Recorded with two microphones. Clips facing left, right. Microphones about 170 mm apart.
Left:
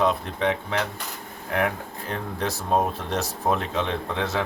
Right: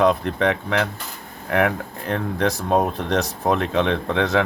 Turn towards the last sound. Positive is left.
turn(degrees=-80)